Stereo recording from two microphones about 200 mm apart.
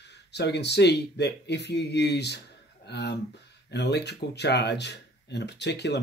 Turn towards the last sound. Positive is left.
turn(degrees=60)  # may be behind; listen again after turning